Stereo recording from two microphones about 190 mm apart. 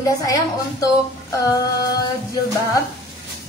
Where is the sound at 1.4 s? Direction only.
20° left (ahead or behind).